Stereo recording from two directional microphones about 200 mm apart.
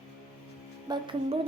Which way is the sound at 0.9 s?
25° right (ahead or behind).